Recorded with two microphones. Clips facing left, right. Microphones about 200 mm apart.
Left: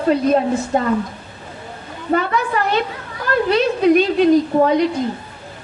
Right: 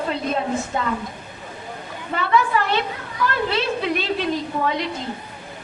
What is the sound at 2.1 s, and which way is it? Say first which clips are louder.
A woman's voice: left 1 dB; 45° left (ahead or behind).